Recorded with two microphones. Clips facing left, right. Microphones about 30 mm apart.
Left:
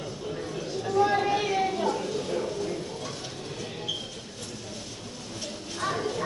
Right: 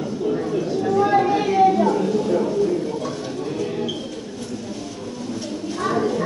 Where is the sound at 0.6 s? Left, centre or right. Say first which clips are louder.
Right 4 dB; centre.